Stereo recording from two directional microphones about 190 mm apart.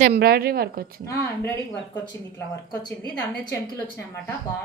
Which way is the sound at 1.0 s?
15° left (ahead or behind).